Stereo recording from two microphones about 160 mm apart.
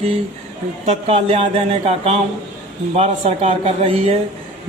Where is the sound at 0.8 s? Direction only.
40° right (ahead or behind).